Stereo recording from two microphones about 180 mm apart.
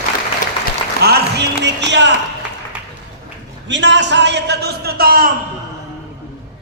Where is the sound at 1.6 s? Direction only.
80° right.